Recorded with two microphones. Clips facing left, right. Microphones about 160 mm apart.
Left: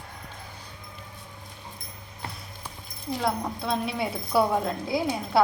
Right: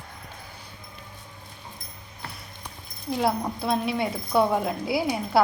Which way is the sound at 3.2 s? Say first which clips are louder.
Right 3 dB; 5° right (ahead or behind).